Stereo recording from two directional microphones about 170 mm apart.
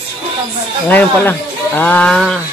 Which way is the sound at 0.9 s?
10° left (ahead or behind).